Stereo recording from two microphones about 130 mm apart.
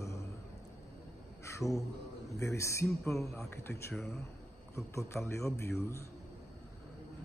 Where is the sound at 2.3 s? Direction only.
25° left (ahead or behind).